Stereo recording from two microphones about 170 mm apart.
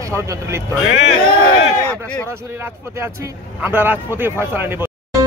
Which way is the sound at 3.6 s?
10° right (ahead or behind).